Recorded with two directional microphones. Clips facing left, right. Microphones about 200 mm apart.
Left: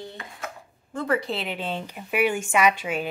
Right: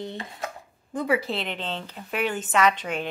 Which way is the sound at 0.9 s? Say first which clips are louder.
Right 1 dB; 5° right (ahead or behind).